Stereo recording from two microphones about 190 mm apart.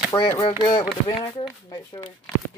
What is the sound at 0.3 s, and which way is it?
Speech, 25° left (ahead or behind).